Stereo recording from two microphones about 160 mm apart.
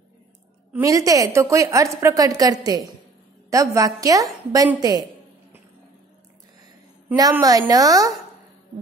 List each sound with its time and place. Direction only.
0.7 s a woman's voice: 20° right (ahead or behind)
7.3 s a woman's voice: 20° right (ahead or behind)